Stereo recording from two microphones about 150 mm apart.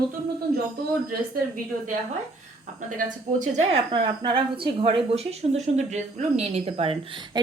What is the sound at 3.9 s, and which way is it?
A woman's voice, 30° right (ahead or behind).